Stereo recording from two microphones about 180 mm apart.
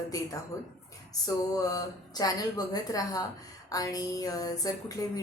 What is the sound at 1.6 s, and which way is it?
Speech, 20° left (ahead or behind).